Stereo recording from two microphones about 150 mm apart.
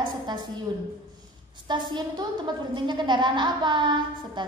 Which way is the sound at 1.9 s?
30° right (ahead or behind).